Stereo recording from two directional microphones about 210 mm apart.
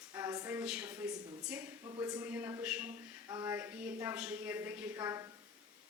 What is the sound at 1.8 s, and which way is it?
A woman's voice, 20° right (ahead or behind).